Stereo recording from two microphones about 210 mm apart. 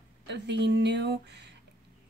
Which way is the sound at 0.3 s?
55° right (ahead or behind).